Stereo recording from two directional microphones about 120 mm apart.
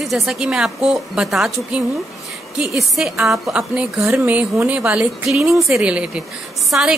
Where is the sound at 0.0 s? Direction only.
Centre (ahead or behind).